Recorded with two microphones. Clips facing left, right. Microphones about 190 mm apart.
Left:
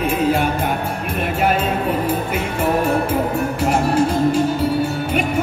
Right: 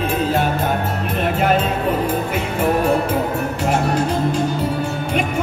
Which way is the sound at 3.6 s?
10° left (ahead or behind).